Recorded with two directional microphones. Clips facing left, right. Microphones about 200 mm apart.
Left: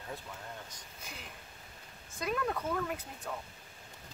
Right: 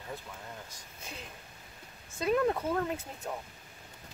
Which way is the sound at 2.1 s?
25° right (ahead or behind).